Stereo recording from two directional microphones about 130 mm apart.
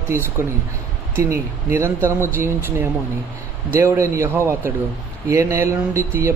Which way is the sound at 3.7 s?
20° right (ahead or behind).